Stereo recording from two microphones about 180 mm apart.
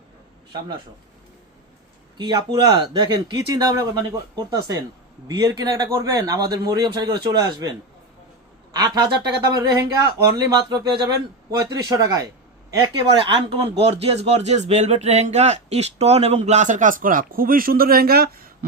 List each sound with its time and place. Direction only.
2.1 s a man's voice: 25° right (ahead or behind); by 18.5 s 55° right (ahead or behind)